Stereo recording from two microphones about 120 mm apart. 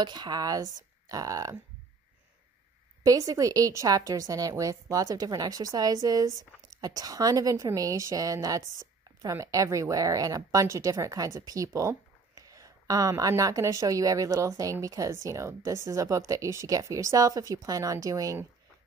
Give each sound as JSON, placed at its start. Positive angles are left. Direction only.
{"t": 0.0, "sound": "speech", "side_deg": -35}
{"t": 3.0, "sound": "a woman's voice", "side_deg": -30}